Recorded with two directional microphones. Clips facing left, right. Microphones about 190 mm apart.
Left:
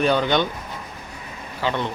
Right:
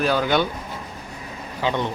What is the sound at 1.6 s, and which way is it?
Speech, 15° right (ahead or behind).